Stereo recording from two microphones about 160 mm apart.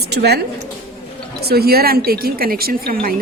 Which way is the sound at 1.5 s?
75° right (ahead or behind).